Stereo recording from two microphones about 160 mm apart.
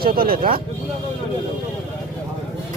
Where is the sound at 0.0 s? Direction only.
65° right (ahead or behind).